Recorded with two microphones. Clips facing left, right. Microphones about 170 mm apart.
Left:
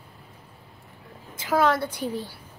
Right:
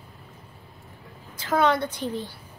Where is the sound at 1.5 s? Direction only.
5° left (ahead or behind).